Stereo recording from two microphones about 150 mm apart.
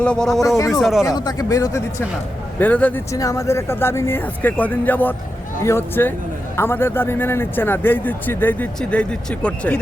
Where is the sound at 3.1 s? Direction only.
20° left (ahead or behind).